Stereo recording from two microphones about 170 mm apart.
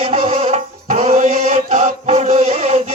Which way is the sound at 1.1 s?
45° right (ahead or behind).